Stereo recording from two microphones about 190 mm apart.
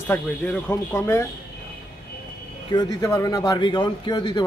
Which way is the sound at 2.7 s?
20° left (ahead or behind).